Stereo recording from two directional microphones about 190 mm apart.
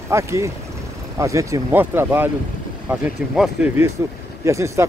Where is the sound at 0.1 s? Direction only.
15° right (ahead or behind).